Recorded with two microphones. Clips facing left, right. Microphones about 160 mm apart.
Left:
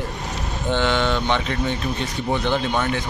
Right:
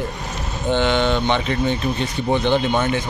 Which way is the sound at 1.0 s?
25° right (ahead or behind).